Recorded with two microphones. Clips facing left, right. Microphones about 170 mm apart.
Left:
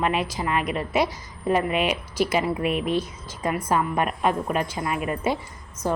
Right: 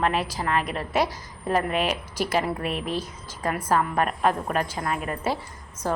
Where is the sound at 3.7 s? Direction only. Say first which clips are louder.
Right 1 dB; 10° left (ahead or behind).